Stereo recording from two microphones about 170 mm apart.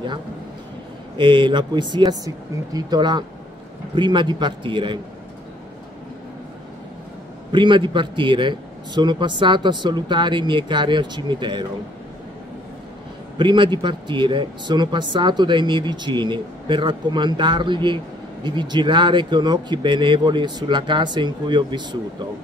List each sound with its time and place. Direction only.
1.1 s speech: 30° right (ahead or behind)
7.5 s speech: 30° right (ahead or behind)
13.4 s speech: 30° right (ahead or behind)